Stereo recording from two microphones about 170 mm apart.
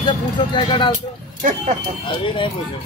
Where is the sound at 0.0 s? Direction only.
25° left (ahead or behind).